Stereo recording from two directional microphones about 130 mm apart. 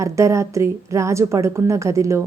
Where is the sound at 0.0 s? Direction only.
25° right (ahead or behind).